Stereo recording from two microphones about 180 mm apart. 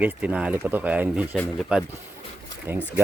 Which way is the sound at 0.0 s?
10° right (ahead or behind).